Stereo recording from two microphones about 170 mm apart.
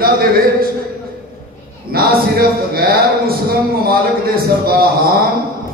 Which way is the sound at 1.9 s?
65° right (ahead or behind).